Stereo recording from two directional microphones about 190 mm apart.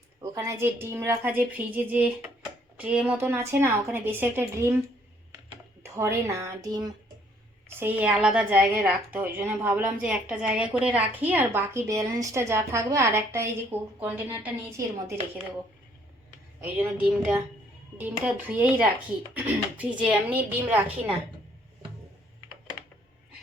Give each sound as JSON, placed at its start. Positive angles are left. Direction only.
{"t": 0.2, "sound": "a woman's voice", "side_deg": -15}
{"t": 5.8, "sound": "a woman's voice", "side_deg": -15}
{"t": 7.8, "sound": "a woman's voice", "side_deg": -10}
{"t": 16.6, "sound": "a woman's voice", "side_deg": -10}